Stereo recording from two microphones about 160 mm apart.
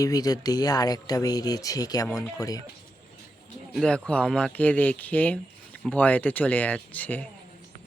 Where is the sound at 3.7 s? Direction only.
5° left (ahead or behind).